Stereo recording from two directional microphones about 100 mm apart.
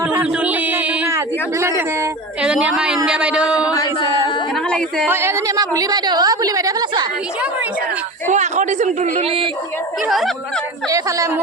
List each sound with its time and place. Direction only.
0.1 s a sound: 20° right (ahead or behind)
1.1 s a sound: 30° right (ahead or behind)
2.4 s a woman's voice: 10° right (ahead or behind)
5.0 s a woman's voice: 25° right (ahead or behind)
10.1 s speech: centre (ahead or behind)
10.8 s a woman's voice: 35° right (ahead or behind)